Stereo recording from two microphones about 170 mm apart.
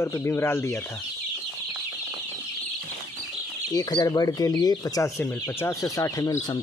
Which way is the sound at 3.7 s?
25° left (ahead or behind).